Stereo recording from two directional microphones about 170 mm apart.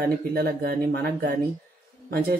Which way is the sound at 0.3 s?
65° right (ahead or behind).